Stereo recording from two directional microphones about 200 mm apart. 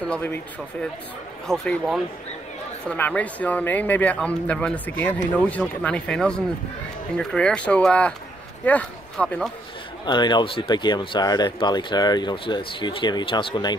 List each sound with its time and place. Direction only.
0.0 s speech: 10° left (ahead or behind)
1.5 s speech: 5° left (ahead or behind)
10.0 s speech: 20° left (ahead or behind)